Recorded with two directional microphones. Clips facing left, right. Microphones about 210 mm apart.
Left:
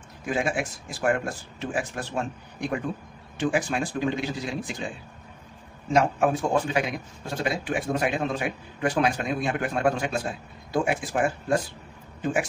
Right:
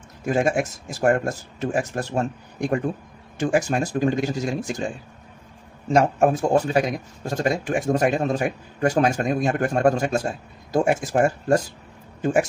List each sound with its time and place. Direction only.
0.2 s speech: 45° right (ahead or behind)
5.9 s speech: 45° right (ahead or behind)